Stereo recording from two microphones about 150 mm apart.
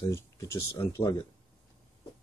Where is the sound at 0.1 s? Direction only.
15° left (ahead or behind).